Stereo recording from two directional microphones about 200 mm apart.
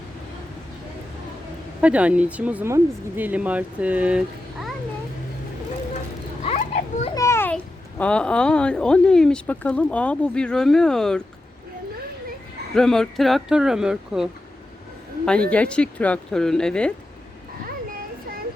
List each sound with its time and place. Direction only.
1.8 s speech: 5° right (ahead or behind)
6.4 s children playing: 30° left (ahead or behind)
7.2 s a child's voice: 15° left (ahead or behind)
12.7 s speech: centre (ahead or behind)